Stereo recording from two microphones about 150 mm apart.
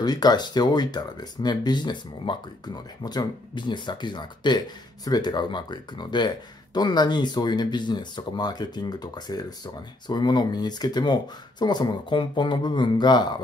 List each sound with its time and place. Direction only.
0.0 s speech: 25° left (ahead or behind)